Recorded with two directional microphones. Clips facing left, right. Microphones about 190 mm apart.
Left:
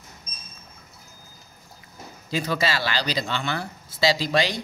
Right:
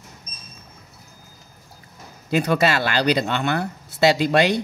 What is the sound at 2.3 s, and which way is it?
Speech, 60° right (ahead or behind).